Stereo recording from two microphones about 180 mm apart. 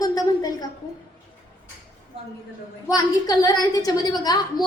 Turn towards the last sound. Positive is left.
turn(degrees=20)  # may be behind; listen again after turning